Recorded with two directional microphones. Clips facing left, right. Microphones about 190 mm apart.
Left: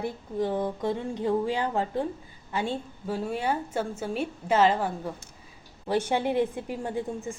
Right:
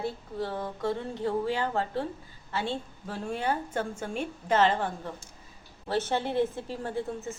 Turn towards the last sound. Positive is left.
turn(degrees=15)  # may be behind; listen again after turning